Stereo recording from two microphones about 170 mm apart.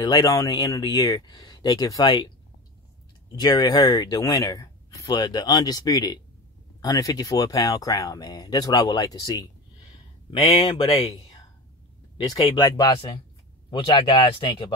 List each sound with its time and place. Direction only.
0.0 s speech: 20° left (ahead or behind)
3.3 s speech: 25° left (ahead or behind)
10.3 s speech: 35° left (ahead or behind)
12.3 s speech: 25° left (ahead or behind)